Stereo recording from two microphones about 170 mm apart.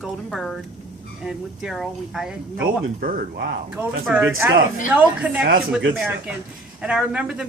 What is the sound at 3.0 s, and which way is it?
Speech, 70° right (ahead or behind).